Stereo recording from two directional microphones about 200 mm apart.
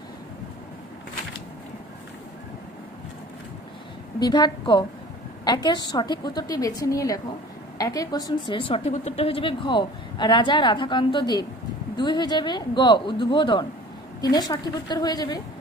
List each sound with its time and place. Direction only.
4.2 s a woman's voice: 20° left (ahead or behind)